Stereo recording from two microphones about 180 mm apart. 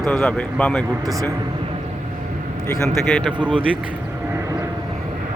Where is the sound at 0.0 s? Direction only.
5° left (ahead or behind).